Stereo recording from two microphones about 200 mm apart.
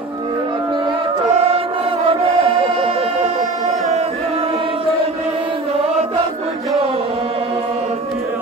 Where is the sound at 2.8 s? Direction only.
30° right (ahead or behind).